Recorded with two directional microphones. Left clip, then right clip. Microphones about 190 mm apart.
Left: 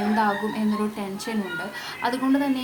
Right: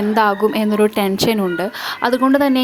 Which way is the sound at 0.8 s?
55° right (ahead or behind).